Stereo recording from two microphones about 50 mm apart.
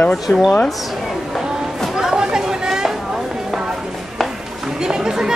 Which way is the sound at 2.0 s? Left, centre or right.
Centre.